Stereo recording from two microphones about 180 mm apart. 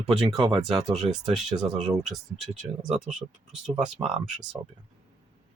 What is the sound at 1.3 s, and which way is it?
Speech, 40° right (ahead or behind).